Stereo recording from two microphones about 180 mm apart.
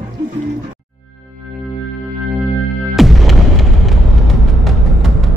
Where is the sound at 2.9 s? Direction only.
Centre (ahead or behind).